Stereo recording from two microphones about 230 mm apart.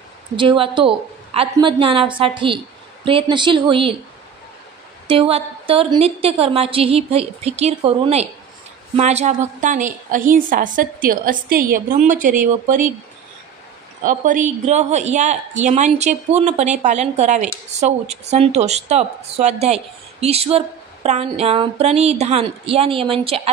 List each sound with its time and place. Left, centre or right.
0.4 s a woman's voice: right
5.0 s a woman's voice: right
14.0 s a woman's voice: right